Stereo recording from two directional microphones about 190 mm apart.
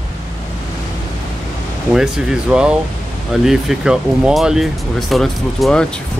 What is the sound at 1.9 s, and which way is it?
Speech, 5° right (ahead or behind).